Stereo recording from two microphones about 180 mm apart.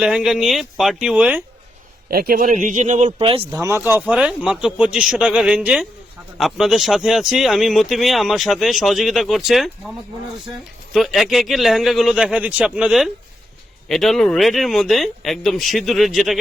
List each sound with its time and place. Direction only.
0.0 s speech: 5° right (ahead or behind)
2.0 s a man's voice: 55° right (ahead or behind)
3.1 s speech: 30° right (ahead or behind)
3.5 s speech: 15° right (ahead or behind)